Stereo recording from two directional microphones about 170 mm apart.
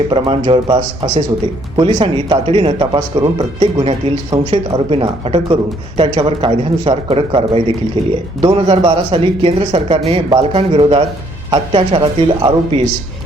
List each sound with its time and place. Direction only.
0.1 s speech: 30° right (ahead or behind)